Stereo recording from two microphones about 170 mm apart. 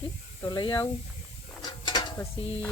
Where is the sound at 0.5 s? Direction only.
25° left (ahead or behind).